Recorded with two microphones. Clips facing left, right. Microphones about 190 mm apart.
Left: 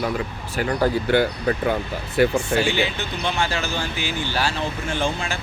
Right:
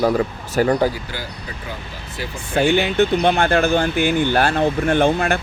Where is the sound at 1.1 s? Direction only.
65° left (ahead or behind).